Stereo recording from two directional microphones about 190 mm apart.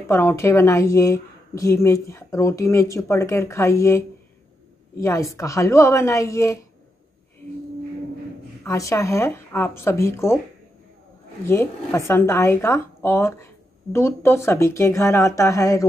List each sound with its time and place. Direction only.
0.1 s a woman's voice: 15° left (ahead or behind)
8.6 s a woman's voice: 15° left (ahead or behind)
11.4 s a woman's voice: 15° left (ahead or behind)